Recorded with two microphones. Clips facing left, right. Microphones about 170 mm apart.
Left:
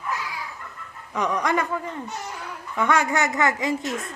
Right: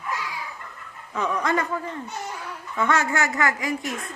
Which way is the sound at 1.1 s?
15° left (ahead or behind).